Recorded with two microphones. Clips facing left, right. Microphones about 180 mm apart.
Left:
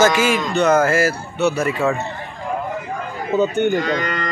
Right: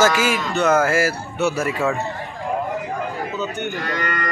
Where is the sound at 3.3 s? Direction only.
50° left (ahead or behind).